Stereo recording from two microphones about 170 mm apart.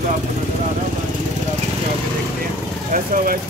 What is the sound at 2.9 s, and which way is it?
Speech, 55° right (ahead or behind).